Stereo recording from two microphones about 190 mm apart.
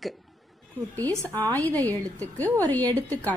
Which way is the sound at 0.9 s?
10° left (ahead or behind).